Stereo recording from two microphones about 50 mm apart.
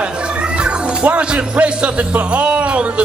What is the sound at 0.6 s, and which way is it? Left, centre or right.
Speech, right.